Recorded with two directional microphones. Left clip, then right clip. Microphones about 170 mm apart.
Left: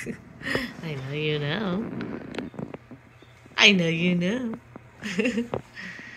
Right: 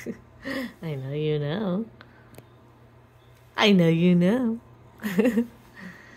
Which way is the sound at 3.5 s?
55° right (ahead or behind).